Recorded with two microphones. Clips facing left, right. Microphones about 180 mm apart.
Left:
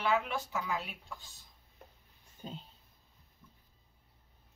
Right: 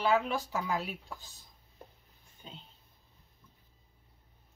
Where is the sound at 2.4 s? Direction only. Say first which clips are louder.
Left 6 dB; 40° left (ahead or behind).